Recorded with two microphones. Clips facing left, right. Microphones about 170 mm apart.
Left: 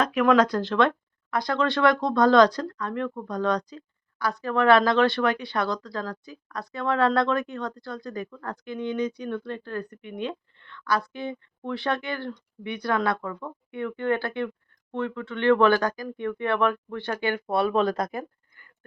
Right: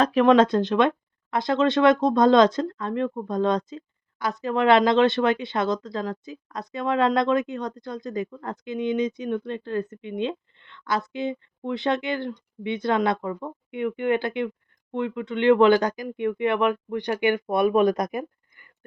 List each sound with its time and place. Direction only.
0.0 s speech: 30° right (ahead or behind)